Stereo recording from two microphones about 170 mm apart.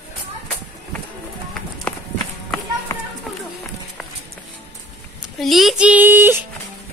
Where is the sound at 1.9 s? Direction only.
5° left (ahead or behind).